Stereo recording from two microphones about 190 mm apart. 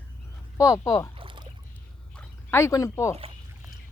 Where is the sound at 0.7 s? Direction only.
15° left (ahead or behind).